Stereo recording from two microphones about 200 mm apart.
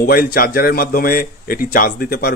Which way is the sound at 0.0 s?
45° left (ahead or behind).